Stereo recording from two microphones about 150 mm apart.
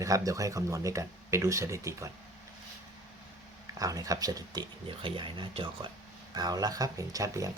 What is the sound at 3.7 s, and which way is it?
Speech, 25° right (ahead or behind).